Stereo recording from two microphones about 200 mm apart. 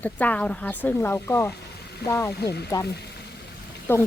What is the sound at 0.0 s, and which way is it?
Speech, 5° left (ahead or behind).